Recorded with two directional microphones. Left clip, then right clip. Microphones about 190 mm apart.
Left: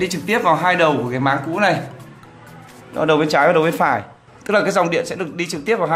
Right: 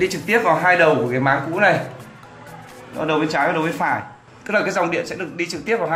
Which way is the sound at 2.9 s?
40° left (ahead or behind).